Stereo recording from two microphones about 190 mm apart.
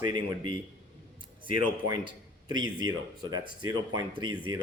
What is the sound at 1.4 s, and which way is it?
Speech, 45° left (ahead or behind).